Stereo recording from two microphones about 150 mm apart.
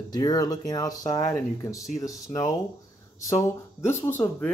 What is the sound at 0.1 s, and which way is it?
Speech, 25° left (ahead or behind).